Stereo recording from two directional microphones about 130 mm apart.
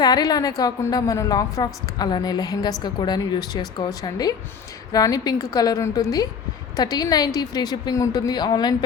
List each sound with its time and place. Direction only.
0.0 s a woman's voice: 30° left (ahead or behind)